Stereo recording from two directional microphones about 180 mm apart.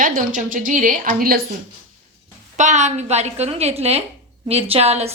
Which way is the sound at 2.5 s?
40° right (ahead or behind).